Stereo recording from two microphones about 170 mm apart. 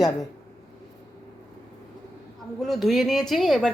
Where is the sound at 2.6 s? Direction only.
Centre (ahead or behind).